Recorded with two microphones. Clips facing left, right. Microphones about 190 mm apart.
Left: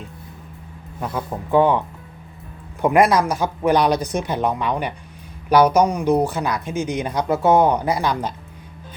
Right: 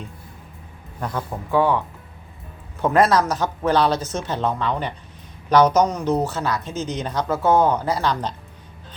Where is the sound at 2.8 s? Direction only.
15° left (ahead or behind).